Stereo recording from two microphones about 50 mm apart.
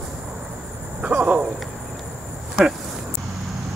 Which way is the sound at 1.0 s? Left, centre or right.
Right.